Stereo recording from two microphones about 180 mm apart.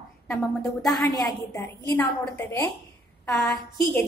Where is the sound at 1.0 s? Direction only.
20° left (ahead or behind).